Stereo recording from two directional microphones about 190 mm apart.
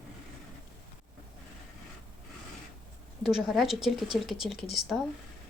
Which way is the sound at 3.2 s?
Centre (ahead or behind).